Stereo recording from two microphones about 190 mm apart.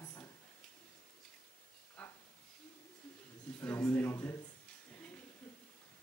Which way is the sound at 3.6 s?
10° left (ahead or behind).